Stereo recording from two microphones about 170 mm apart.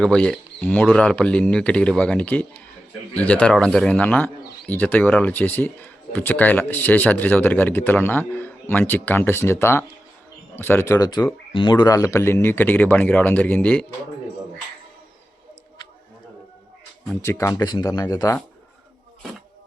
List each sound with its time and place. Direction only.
0.0 s speech: 5° left (ahead or behind)
17.2 s speech: 15° left (ahead or behind)